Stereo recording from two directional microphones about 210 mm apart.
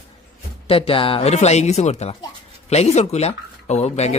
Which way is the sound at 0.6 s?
25° left (ahead or behind).